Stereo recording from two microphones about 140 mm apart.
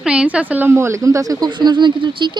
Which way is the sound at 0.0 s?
5° right (ahead or behind).